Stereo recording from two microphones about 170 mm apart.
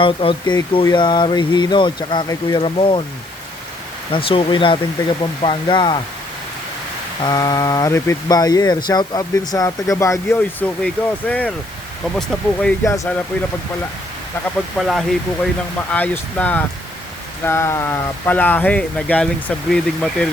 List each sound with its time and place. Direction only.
0.0 s speech: 30° left (ahead or behind)
4.1 s speech: 30° left (ahead or behind)
7.2 s speech: 25° left (ahead or behind); by 12.7 s 5° left (ahead or behind)
12.8 s speech: 15° left (ahead or behind)
14.8 s speech: centre (ahead or behind)